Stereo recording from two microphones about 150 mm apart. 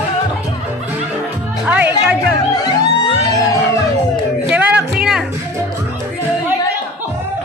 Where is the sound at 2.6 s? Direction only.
25° left (ahead or behind).